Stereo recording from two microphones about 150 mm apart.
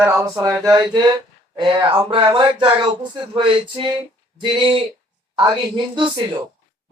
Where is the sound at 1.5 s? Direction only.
35° right (ahead or behind).